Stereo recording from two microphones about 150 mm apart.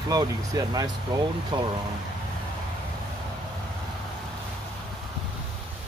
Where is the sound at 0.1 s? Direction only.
25° right (ahead or behind).